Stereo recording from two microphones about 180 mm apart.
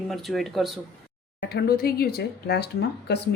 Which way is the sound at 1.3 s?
60° left (ahead or behind).